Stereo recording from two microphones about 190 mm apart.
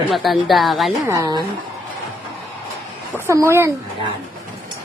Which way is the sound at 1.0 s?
20° right (ahead or behind).